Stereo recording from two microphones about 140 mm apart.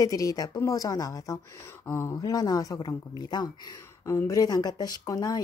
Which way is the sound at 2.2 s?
25° left (ahead or behind).